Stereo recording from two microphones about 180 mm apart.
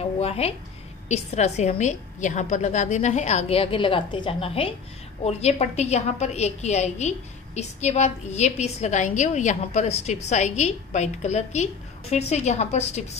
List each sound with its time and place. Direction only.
0.2 s a woman's voice: 35° left (ahead or behind)